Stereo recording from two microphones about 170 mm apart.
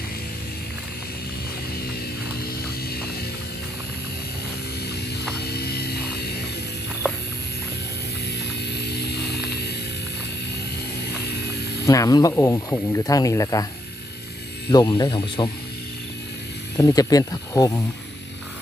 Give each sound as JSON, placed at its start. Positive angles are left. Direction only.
{"t": 5.4, "sound": "a sound", "side_deg": 70}
{"t": 8.6, "sound": "vehicle", "side_deg": 75}
{"t": 11.9, "sound": "speech", "side_deg": 20}
{"t": 14.7, "sound": "speech", "side_deg": 25}
{"t": 16.7, "sound": "speech", "side_deg": 20}